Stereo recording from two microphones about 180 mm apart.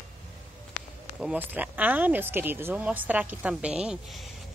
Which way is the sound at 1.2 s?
10° right (ahead or behind).